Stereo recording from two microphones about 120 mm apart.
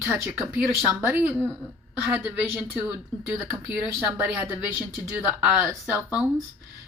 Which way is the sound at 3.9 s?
20° right (ahead or behind).